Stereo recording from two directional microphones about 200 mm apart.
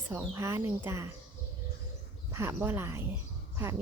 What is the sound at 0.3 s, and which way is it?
Speech, 15° right (ahead or behind).